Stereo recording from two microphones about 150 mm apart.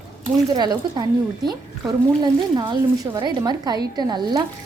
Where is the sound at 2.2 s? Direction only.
30° right (ahead or behind).